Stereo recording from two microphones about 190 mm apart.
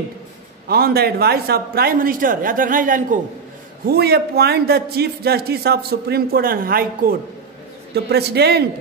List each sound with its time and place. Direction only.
0.7 s a man's voice: 55° right (ahead or behind)
3.8 s a man's voice: 55° right (ahead or behind)